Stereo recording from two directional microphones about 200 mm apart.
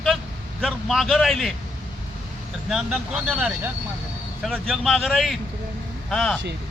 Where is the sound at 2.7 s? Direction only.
Centre (ahead or behind).